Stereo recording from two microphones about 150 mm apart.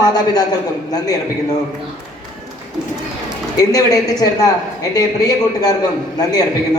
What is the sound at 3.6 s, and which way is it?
A man's voice, 25° left (ahead or behind).